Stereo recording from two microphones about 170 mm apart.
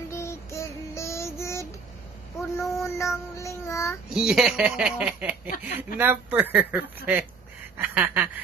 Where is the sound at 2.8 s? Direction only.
15° left (ahead or behind).